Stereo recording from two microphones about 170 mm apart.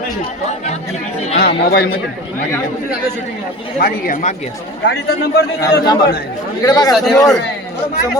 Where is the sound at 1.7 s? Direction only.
65° left (ahead or behind).